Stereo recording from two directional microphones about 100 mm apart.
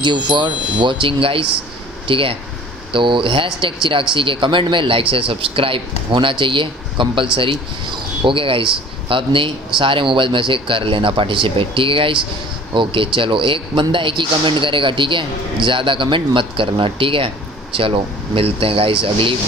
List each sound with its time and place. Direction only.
0.0 s a man's voice: 50° right (ahead or behind)